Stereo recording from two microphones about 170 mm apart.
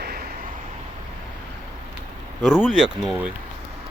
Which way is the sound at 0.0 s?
65° right (ahead or behind).